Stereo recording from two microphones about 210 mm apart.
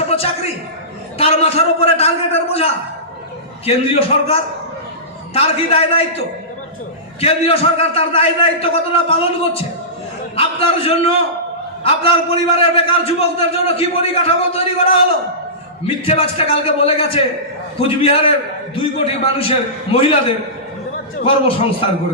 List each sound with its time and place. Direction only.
0.1 s a sound: 30° left (ahead or behind)
1.2 s a man's voice: 30° left (ahead or behind)
3.7 s a man's voice: 30° left (ahead or behind)
16.0 s a man's voice: 25° left (ahead or behind)